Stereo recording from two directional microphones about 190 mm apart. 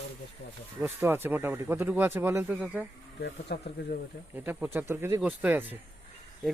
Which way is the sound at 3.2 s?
55° left (ahead or behind).